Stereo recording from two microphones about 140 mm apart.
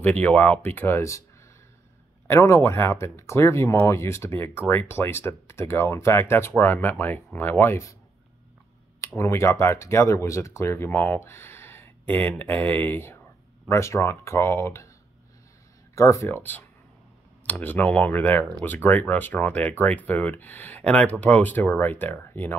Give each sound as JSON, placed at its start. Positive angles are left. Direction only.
{"t": 0.0, "sound": "speech", "side_deg": 10}
{"t": 2.2, "sound": "speech", "side_deg": 20}
{"t": 9.0, "sound": "speech", "side_deg": 20}
{"t": 15.9, "sound": "speech", "side_deg": 20}
{"t": 17.5, "sound": "speech", "side_deg": 15}